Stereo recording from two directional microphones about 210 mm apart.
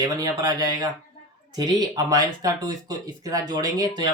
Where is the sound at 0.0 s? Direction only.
15° right (ahead or behind).